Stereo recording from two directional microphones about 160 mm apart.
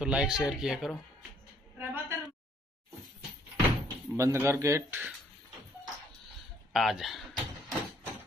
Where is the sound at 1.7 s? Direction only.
15° right (ahead or behind).